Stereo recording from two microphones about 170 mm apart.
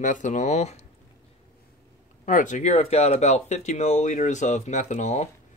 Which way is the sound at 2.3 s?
50° left (ahead or behind).